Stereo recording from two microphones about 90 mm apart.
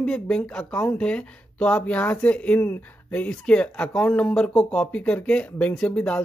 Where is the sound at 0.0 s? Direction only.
10° left (ahead or behind).